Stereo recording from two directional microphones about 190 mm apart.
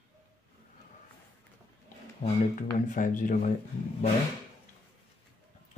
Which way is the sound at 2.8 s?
45° left (ahead or behind).